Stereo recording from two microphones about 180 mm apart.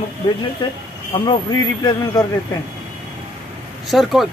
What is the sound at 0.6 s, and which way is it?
Speech, 25° left (ahead or behind).